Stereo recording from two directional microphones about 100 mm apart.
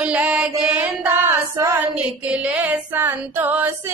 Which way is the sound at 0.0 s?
15° right (ahead or behind).